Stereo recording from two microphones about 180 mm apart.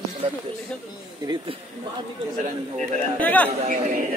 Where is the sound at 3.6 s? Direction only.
50° right (ahead or behind).